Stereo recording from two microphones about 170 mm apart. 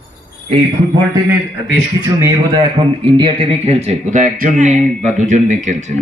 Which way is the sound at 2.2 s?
25° right (ahead or behind).